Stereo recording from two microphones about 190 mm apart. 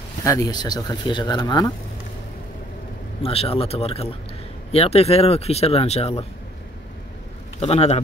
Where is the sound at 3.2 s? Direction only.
30° left (ahead or behind).